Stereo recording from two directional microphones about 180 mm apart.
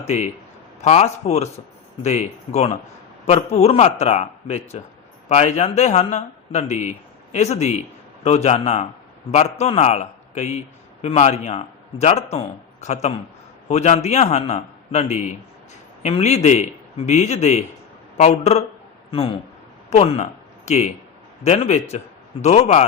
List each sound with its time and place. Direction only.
0.0 s a man's voice: 40° left (ahead or behind)